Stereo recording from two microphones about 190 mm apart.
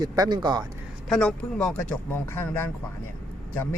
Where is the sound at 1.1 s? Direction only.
5° left (ahead or behind).